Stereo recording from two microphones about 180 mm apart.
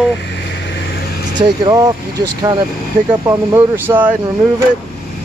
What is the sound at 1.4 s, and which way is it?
Speech, 20° right (ahead or behind).